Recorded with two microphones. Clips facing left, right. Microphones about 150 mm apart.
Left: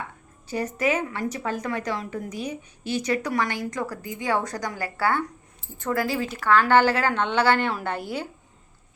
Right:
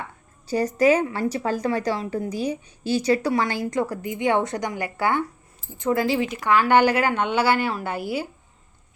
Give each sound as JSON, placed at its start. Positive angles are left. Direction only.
{"t": 0.4, "sound": "a woman's voice", "side_deg": -35}